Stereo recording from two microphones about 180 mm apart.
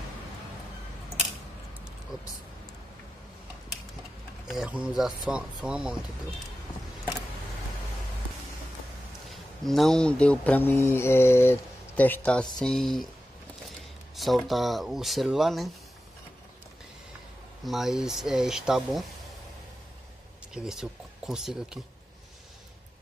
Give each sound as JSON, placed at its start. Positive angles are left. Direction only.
{"t": 4.5, "sound": "speech", "side_deg": -5}
{"t": 9.3, "sound": "mantra", "side_deg": 0}
{"t": 12.0, "sound": "speech", "side_deg": 10}
{"t": 14.1, "sound": "speech", "side_deg": 0}
{"t": 17.6, "sound": "speech", "side_deg": 0}
{"t": 20.5, "sound": "speech", "side_deg": -5}